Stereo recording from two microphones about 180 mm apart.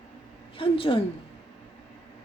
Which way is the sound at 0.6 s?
30° left (ahead or behind).